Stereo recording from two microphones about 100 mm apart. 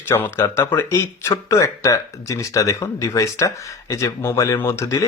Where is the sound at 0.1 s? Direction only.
25° left (ahead or behind).